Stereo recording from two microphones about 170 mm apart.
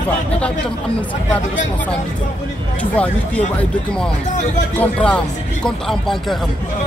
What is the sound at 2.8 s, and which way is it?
Speech, 10° left (ahead or behind).